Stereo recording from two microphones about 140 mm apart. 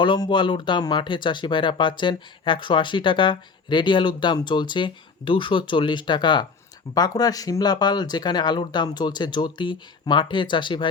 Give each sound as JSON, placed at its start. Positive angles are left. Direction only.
{"t": 0.0, "sound": "speech", "side_deg": 35}